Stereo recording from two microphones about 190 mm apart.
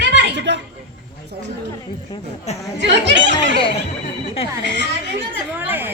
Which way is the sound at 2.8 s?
70° right (ahead or behind).